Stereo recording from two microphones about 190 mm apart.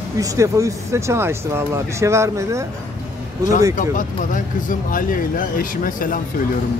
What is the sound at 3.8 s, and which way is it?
Speech, 45° left (ahead or behind).